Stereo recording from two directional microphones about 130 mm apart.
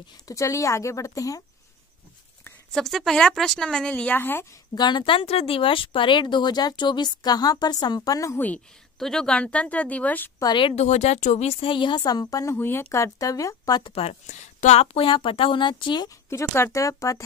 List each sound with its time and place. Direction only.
0.3 s speech: 25° left (ahead or behind)
2.7 s speech: 5° left (ahead or behind)
4.7 s speech: 35° left (ahead or behind)
9.0 s speech: 5° left (ahead or behind)
10.4 s speech: 35° left (ahead or behind)
10.8 s a woman's voice: 60° left (ahead or behind); by 12.5 s 30° left (ahead or behind)
12.5 s speech: 15° left (ahead or behind)
13.9 s a woman's voice: 55° left (ahead or behind); by 16.1 s 35° left (ahead or behind)
16.3 s speech: 20° left (ahead or behind)